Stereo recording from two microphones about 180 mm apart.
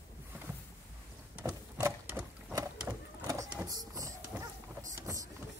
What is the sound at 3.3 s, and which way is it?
Vehicle, 20° right (ahead or behind).